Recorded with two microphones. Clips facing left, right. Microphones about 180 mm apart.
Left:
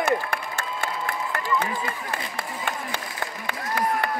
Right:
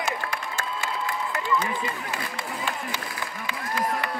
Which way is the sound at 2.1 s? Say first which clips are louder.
Left 1 dB; 60° left (ahead or behind).